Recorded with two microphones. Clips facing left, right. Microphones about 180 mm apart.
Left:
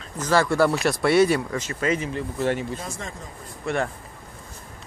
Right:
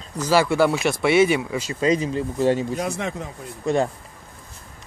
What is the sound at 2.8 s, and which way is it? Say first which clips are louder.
Speech: right 9 dB; 70° right (ahead or behind).